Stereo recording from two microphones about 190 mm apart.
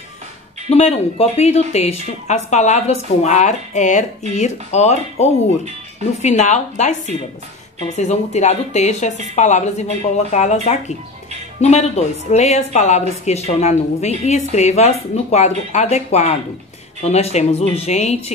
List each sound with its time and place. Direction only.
0.7 s speech: 35° left (ahead or behind)